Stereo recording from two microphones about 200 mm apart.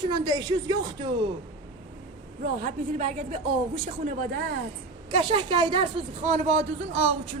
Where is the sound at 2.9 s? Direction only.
35° right (ahead or behind).